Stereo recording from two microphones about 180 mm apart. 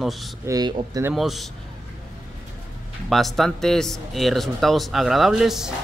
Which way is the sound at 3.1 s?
Centre (ahead or behind).